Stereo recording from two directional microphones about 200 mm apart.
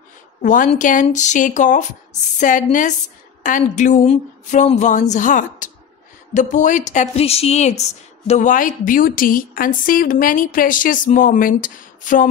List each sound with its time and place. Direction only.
0.4 s speech: 40° left (ahead or behind)